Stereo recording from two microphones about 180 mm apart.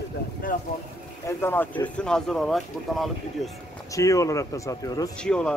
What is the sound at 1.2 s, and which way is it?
Speech, 10° left (ahead or behind).